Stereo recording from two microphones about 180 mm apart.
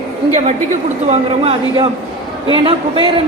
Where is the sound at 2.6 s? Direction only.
30° right (ahead or behind).